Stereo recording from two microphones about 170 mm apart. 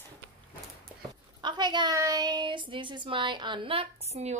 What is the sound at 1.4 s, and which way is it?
Speech, 25° right (ahead or behind).